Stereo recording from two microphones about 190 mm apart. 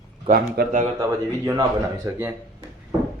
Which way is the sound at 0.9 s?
15° right (ahead or behind).